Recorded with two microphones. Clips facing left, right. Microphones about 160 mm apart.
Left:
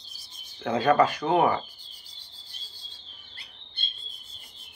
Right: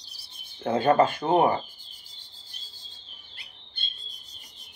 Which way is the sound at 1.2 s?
30° right (ahead or behind).